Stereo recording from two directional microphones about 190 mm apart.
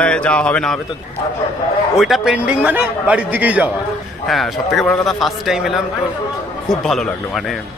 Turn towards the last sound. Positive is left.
turn(degrees=0)  # may be behind; listen again after turning